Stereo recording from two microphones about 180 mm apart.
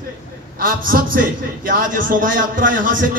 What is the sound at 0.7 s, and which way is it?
A man's voice, 50° right (ahead or behind).